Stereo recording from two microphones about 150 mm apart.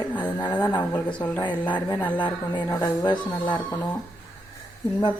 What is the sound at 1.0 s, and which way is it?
Speech, 10° left (ahead or behind).